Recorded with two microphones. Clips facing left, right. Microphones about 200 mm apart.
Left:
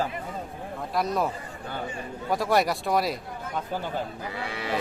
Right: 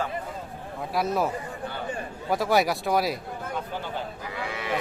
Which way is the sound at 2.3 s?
Centre (ahead or behind).